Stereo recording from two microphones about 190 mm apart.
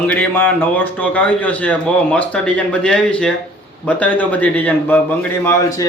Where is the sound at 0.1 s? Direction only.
10° left (ahead or behind).